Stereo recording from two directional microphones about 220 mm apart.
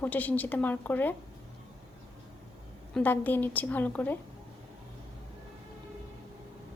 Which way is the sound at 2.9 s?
10° left (ahead or behind).